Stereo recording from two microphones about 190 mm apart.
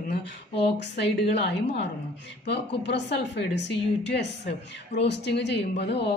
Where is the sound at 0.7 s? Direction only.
60° left (ahead or behind).